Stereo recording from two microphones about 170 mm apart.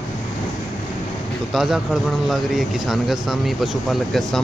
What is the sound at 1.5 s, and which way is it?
Speech, centre (ahead or behind).